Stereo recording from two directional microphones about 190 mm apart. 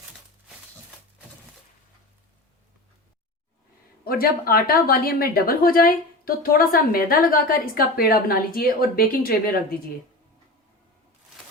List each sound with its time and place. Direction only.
4.0 s a woman's voice: 50° left (ahead or behind)